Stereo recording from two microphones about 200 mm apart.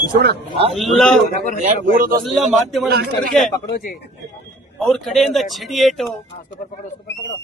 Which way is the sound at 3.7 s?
50° left (ahead or behind).